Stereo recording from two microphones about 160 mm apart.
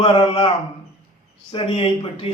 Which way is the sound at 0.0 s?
30° left (ahead or behind).